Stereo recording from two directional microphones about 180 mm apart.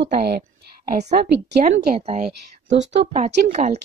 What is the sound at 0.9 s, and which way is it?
A woman's voice, 40° right (ahead or behind).